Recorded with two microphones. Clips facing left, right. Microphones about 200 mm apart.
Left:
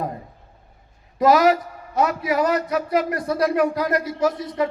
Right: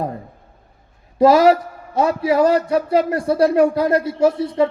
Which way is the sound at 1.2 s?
30° right (ahead or behind).